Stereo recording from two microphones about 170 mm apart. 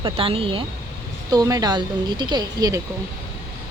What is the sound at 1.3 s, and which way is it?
Speech, 20° right (ahead or behind).